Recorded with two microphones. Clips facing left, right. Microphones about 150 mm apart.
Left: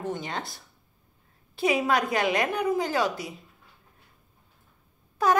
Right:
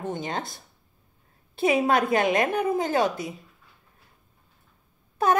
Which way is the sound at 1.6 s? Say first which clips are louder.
Right 3 dB; 25° right (ahead or behind).